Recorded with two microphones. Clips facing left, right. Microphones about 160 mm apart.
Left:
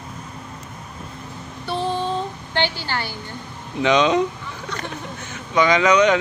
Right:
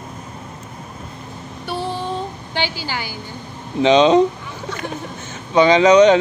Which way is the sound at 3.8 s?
30° right (ahead or behind).